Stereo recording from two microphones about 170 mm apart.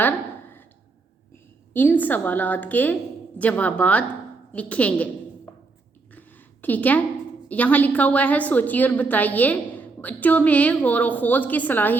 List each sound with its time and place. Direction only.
1.7 s a woman's voice: 10° left (ahead or behind)
6.1 s a sound: 10° left (ahead or behind)
7.4 s a woman's voice: 10° left (ahead or behind)